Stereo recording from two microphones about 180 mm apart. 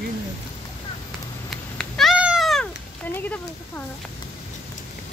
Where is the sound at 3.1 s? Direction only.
10° left (ahead or behind).